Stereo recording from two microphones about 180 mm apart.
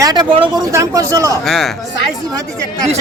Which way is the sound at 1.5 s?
Centre (ahead or behind).